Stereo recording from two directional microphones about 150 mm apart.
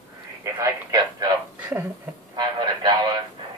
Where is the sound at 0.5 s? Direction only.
20° right (ahead or behind).